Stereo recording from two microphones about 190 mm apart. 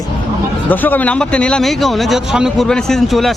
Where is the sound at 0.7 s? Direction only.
10° left (ahead or behind).